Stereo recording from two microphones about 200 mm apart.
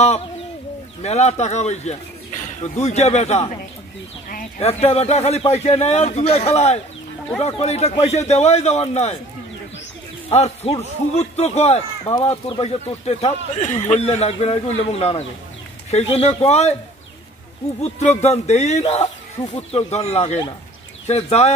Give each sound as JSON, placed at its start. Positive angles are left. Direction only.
{"t": 1.0, "sound": "speech", "side_deg": 35}
{"t": 4.6, "sound": "speech", "side_deg": 30}
{"t": 10.3, "sound": "speech", "side_deg": 30}
{"t": 17.8, "sound": "speech", "side_deg": 30}
{"t": 19.4, "sound": "speech", "side_deg": 20}
{"t": 19.9, "sound": "speech", "side_deg": 30}